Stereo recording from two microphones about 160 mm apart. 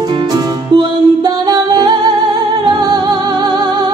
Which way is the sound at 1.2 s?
25° right (ahead or behind).